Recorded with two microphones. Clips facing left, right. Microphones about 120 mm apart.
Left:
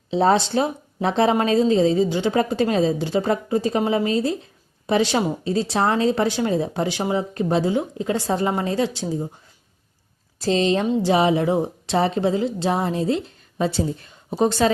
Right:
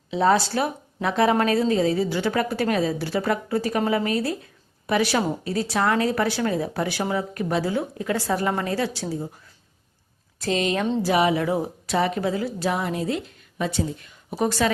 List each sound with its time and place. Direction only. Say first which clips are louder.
0.1 s speech: left 2 dB; 25° left (ahead or behind)
10.4 s speech: left 4 dB; 30° left (ahead or behind)